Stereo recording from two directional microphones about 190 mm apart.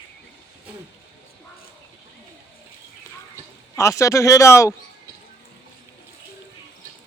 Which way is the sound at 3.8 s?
15° left (ahead or behind).